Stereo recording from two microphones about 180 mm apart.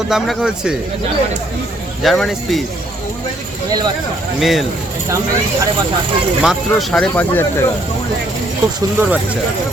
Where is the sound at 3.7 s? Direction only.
20° right (ahead or behind).